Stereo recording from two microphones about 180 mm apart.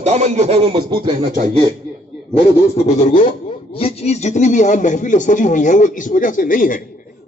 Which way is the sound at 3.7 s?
35° left (ahead or behind).